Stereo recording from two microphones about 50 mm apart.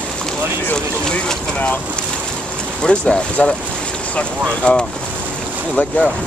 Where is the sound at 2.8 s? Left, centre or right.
Left.